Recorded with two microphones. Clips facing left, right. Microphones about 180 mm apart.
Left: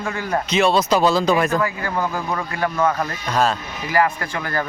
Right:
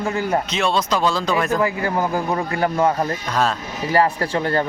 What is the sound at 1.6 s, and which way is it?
A man's voice, 25° right (ahead or behind).